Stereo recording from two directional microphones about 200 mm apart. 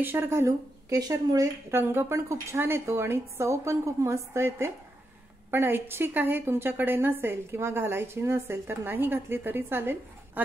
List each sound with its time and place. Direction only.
0.0 s a woman's voice: 10° right (ahead or behind)